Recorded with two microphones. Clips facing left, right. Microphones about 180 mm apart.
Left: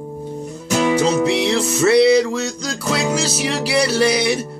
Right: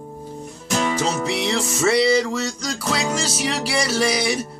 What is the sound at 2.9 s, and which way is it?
Music, centre (ahead or behind).